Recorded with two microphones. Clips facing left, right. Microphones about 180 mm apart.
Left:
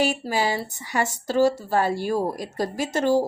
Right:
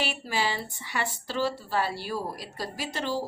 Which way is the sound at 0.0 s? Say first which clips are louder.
Left 7 dB; 45° left (ahead or behind).